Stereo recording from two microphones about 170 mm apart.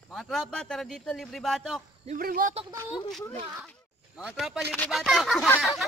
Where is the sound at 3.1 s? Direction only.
5° left (ahead or behind).